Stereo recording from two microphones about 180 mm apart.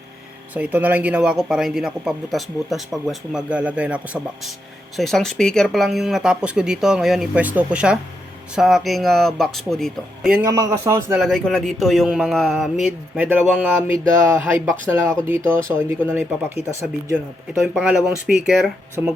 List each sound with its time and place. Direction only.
0.5 s a man's voice: 10° right (ahead or behind)
10.4 s a man's voice: 20° right (ahead or behind)
11.2 s a man's voice: centre (ahead or behind)
17.5 s a man's voice: 5° right (ahead or behind)